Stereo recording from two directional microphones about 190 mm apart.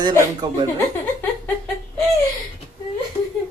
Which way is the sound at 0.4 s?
20° right (ahead or behind).